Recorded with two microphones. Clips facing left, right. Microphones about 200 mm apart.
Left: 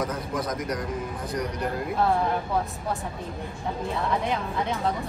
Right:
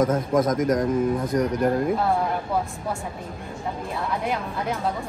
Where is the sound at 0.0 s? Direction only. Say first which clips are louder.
Right 8 dB; 45° right (ahead or behind).